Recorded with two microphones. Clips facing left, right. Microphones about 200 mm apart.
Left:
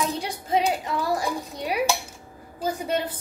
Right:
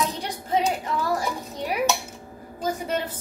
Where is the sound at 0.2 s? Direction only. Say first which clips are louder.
Even; 10° left (ahead or behind).